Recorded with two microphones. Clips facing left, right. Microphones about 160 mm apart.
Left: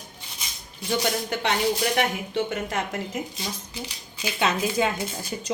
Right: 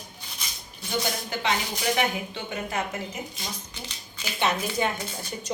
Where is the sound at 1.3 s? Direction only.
65° left (ahead or behind).